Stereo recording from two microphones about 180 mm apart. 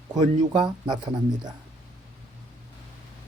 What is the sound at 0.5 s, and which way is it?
Speech, 25° right (ahead or behind).